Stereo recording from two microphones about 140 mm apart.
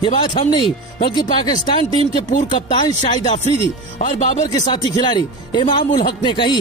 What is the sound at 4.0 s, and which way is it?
Speech, 60° left (ahead or behind).